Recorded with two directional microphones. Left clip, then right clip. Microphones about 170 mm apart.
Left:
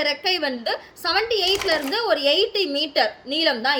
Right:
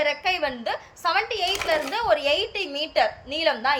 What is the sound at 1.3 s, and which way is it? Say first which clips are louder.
Speech: left 5 dB; 15° right (ahead or behind).